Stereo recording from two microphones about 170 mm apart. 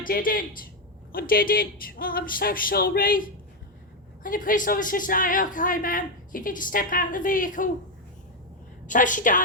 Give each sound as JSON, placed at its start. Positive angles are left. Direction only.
{"t": 0.0, "sound": "a woman's voice", "side_deg": 55}
{"t": 8.9, "sound": "a woman's voice", "side_deg": 50}